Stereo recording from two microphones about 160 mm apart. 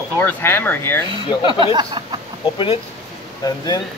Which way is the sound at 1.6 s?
30° right (ahead or behind).